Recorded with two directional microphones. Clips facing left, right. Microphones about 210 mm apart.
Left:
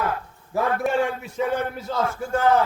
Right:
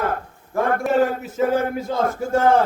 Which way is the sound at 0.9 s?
40° right (ahead or behind).